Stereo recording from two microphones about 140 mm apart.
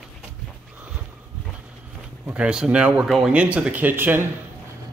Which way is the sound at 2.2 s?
10° right (ahead or behind).